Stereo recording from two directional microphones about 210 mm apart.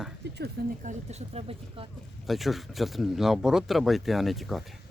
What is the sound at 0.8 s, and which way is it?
Speech, 35° right (ahead or behind).